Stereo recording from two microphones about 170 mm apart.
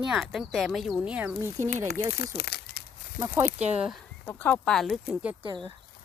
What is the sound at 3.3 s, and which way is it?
Speech, 15° right (ahead or behind).